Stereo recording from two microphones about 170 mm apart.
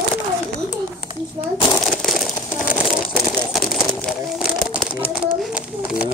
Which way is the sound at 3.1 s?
Centre (ahead or behind).